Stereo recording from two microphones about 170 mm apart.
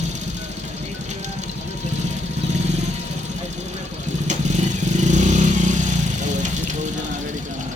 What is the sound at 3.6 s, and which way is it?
Speech, 45° right (ahead or behind).